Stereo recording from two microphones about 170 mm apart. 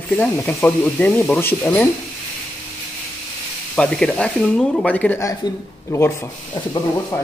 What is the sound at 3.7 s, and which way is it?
Speech, 5° left (ahead or behind).